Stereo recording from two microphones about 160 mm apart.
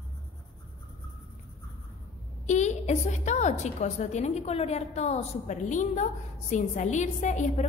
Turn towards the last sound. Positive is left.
turn(degrees=50)  # may be behind; listen again after turning